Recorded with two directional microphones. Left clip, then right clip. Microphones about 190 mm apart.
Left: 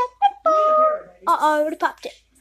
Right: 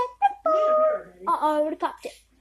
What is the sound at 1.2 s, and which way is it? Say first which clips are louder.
Speech: left 5 dB; 10° left (ahead or behind).